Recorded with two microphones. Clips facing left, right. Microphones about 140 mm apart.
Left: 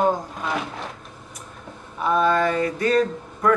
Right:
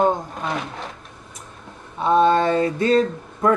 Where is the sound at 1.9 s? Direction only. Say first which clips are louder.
Right 4 dB; 25° right (ahead or behind).